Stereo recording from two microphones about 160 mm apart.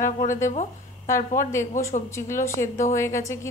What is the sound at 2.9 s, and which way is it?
Speech, 20° left (ahead or behind).